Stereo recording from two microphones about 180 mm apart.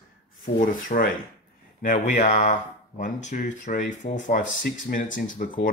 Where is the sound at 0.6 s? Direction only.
50° left (ahead or behind).